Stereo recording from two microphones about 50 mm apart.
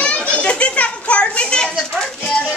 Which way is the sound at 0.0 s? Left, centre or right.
Left.